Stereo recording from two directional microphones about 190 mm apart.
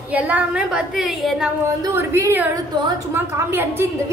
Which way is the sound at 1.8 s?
15° right (ahead or behind).